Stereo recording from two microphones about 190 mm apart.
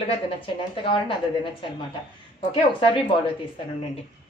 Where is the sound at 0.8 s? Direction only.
25° left (ahead or behind).